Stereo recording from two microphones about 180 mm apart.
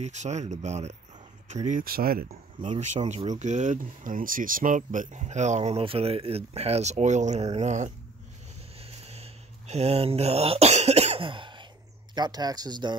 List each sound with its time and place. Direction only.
0.0 s speech: 40° right (ahead or behind)
2.8 s speech: 40° right (ahead or behind)
8.7 s a sound: 35° right (ahead or behind)
12.2 s speech: 20° right (ahead or behind)